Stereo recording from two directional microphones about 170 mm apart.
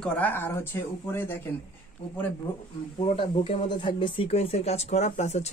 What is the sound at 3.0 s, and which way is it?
Speech, 30° left (ahead or behind).